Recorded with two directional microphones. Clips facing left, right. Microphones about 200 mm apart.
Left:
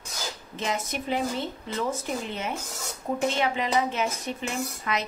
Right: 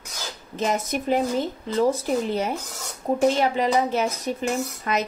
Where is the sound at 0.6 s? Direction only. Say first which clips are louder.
Right 6 dB; 40° right (ahead or behind).